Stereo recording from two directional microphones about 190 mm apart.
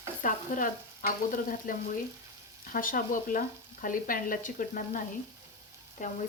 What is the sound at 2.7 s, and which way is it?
Frying, 45° left (ahead or behind).